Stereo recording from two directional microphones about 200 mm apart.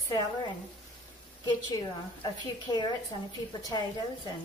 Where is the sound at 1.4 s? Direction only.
20° left (ahead or behind).